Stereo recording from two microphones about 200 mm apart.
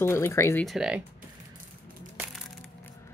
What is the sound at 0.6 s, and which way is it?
Speech, 5° right (ahead or behind).